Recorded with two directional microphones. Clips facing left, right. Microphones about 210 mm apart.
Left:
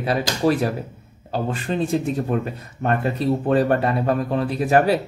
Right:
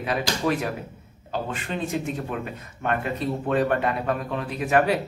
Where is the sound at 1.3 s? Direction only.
35° left (ahead or behind).